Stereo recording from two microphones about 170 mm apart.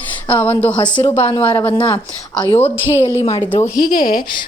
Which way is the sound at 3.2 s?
40° left (ahead or behind).